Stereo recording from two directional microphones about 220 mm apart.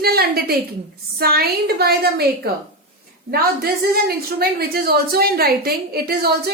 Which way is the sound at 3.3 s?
45° right (ahead or behind).